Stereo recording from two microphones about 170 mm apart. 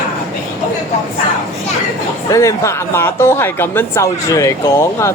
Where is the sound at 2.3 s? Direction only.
20° left (ahead or behind).